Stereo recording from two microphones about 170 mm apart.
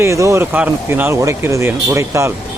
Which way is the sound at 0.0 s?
15° right (ahead or behind).